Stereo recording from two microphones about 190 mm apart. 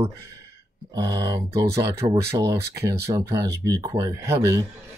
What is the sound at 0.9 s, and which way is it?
Speech, 15° right (ahead or behind).